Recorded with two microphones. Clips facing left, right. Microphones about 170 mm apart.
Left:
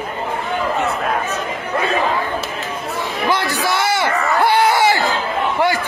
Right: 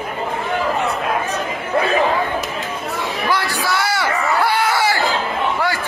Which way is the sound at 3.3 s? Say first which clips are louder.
Left 2 dB; 20° left (ahead or behind).